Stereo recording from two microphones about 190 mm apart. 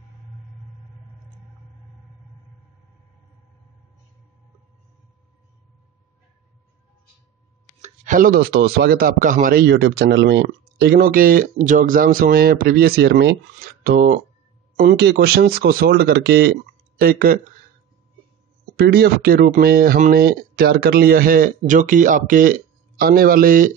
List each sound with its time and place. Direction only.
7.8 s a man's voice: 40° right (ahead or behind)
18.8 s a man's voice: 55° right (ahead or behind)